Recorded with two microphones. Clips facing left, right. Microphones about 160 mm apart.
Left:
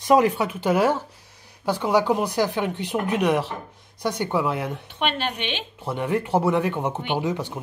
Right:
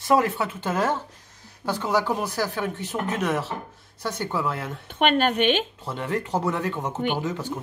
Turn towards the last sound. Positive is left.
turn(degrees=15)  # may be behind; listen again after turning